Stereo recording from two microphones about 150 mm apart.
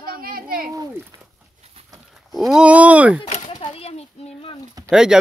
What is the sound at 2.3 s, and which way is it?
Speech, 5° right (ahead or behind).